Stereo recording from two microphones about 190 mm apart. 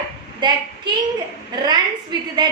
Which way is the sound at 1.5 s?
20° right (ahead or behind).